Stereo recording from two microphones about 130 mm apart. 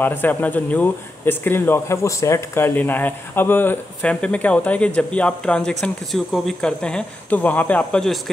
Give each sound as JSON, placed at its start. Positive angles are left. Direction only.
{"t": 0.0, "sound": "speech", "side_deg": 15}